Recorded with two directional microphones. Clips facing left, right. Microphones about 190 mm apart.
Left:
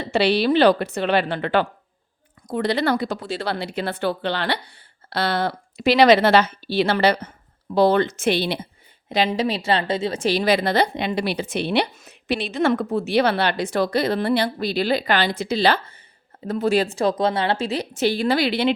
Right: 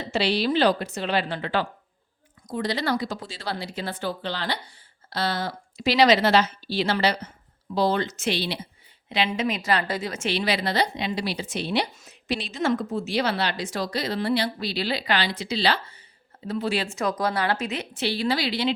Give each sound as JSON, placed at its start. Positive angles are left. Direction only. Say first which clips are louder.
{"t": 0.0, "sound": "a woman's voice", "louder": "left 5 dB", "side_deg": 60}
{"t": 9.0, "sound": "a woman's voice", "louder": "left 4 dB", "side_deg": 40}